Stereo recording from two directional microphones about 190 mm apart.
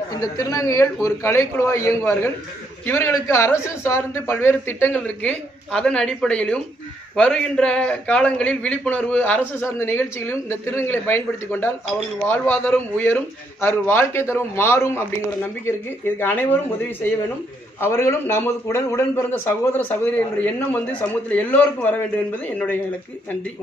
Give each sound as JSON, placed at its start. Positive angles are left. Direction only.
{"t": 0.1, "sound": "a man's voice", "side_deg": 20}
{"t": 16.2, "sound": "a man's voice", "side_deg": 10}
{"t": 17.7, "sound": "a man's voice", "side_deg": 15}